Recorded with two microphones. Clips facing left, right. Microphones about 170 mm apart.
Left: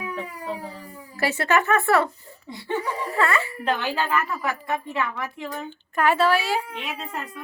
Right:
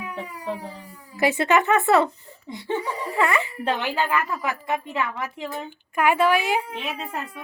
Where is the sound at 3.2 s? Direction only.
15° right (ahead or behind).